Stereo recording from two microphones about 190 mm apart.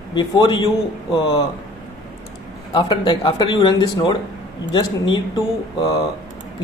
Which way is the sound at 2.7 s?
25° left (ahead or behind).